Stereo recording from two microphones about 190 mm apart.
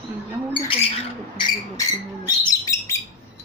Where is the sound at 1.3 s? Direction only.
20° left (ahead or behind).